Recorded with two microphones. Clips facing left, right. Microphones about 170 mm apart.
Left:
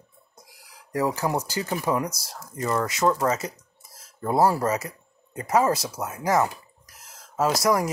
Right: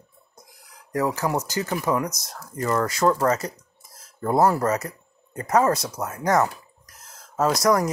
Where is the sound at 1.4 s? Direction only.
30° left (ahead or behind).